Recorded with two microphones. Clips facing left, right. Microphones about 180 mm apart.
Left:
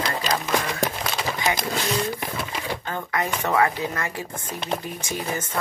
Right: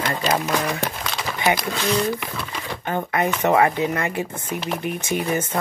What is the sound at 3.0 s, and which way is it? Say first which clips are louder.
Speech: right 5 dB; 20° right (ahead or behind).